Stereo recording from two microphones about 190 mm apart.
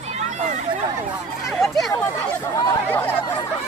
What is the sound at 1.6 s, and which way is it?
Speech, centre (ahead or behind).